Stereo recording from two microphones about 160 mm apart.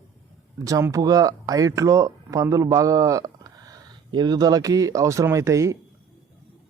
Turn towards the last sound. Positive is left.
turn(degrees=-20)  # may be behind; listen again after turning